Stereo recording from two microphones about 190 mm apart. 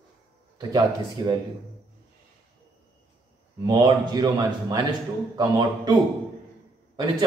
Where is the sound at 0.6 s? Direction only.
20° right (ahead or behind).